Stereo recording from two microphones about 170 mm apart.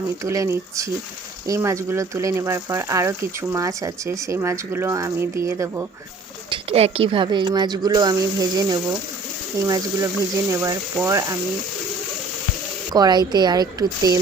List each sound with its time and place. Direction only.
0.3 s speech: 15° right (ahead or behind)
6.5 s speech: 35° right (ahead or behind); by 11.3 s 20° right (ahead or behind)
12.9 s speech: 25° right (ahead or behind)